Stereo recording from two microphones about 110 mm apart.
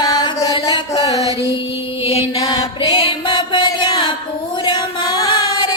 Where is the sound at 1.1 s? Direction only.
30° right (ahead or behind).